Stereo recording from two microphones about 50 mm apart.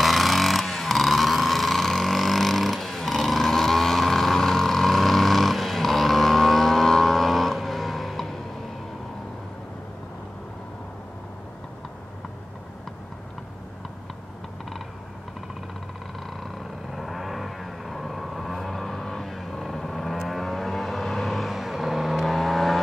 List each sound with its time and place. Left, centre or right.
0.0 s vehicle: centre
16.3 s vehicle: centre